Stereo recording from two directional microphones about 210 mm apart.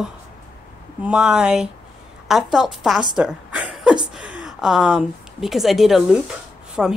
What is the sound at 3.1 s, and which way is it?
Chuckle, 5° right (ahead or behind).